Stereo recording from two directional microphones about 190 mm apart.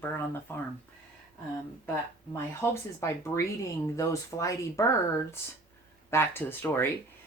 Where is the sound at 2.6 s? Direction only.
15° left (ahead or behind).